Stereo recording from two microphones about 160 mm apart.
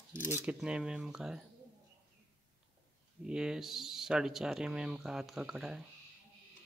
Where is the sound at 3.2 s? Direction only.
5° right (ahead or behind).